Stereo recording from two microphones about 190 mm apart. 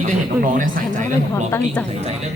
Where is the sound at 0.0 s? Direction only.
45° right (ahead or behind).